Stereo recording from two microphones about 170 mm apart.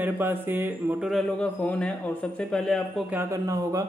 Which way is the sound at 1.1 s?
5° left (ahead or behind).